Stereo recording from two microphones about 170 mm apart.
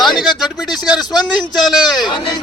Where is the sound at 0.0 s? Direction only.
Centre (ahead or behind).